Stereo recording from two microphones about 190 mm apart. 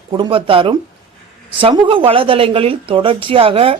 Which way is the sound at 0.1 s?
25° right (ahead or behind).